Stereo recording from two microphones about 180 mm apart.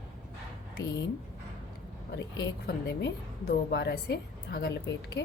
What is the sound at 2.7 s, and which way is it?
A woman's voice, 65° left (ahead or behind).